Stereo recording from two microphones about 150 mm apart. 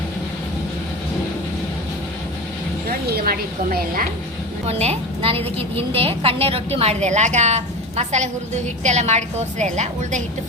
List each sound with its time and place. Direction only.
3.1 s a woman's voice: 85° right
4.6 s a woman's voice: 45° right (ahead or behind)